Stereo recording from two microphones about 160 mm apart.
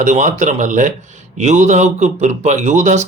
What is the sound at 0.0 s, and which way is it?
Speech, 50° right (ahead or behind).